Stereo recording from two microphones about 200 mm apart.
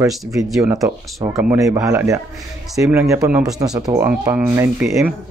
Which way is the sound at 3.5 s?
20° right (ahead or behind).